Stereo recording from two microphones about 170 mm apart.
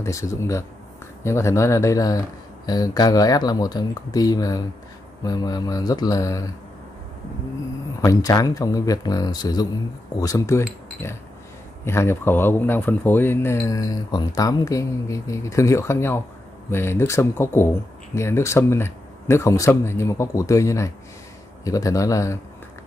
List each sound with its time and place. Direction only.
0.0 s speech: 15° left (ahead or behind)
8.0 s speech: 20° left (ahead or behind)